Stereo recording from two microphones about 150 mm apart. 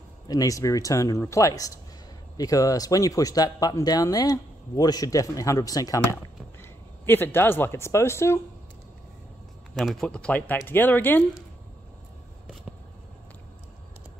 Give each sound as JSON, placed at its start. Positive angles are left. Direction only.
{"t": 0.3, "sound": "speech", "side_deg": 25}
{"t": 9.8, "sound": "speech", "side_deg": 0}